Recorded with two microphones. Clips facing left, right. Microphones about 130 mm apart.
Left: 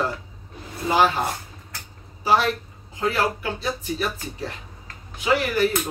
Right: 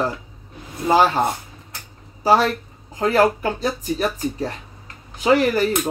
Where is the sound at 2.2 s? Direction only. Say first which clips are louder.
Right 4 dB; 40° right (ahead or behind).